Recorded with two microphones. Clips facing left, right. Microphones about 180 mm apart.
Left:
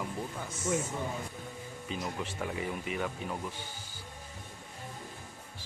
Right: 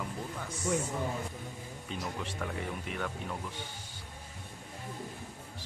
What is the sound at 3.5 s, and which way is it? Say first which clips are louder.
Speech: right 1 dB; 30° right (ahead or behind).